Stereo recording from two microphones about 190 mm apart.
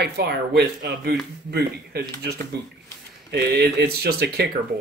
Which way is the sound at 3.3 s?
60° right (ahead or behind).